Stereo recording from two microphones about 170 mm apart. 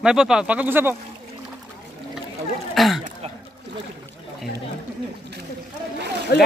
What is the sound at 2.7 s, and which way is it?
Speech, centre (ahead or behind).